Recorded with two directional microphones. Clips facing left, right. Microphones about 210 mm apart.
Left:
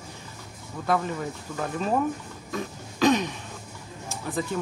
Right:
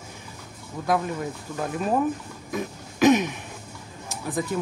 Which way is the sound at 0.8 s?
10° right (ahead or behind).